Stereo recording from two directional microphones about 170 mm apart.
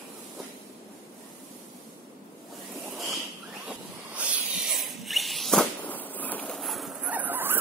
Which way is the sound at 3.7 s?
5° right (ahead or behind).